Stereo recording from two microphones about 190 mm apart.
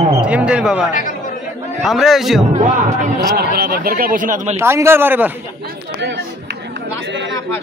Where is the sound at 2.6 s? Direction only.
35° right (ahead or behind).